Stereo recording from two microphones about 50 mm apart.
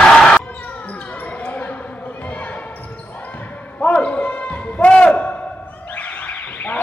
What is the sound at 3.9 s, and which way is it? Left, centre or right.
Basketball bounce, left.